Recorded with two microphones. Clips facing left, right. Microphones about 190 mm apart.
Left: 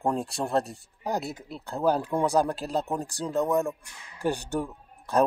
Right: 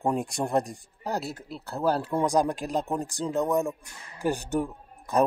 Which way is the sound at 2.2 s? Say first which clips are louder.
Even; 5° left (ahead or behind).